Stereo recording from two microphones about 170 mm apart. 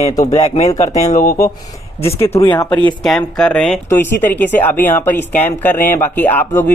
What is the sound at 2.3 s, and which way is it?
Speech, 35° left (ahead or behind).